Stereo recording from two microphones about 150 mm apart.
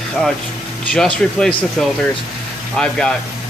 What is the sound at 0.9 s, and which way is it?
A man's voice, 5° left (ahead or behind).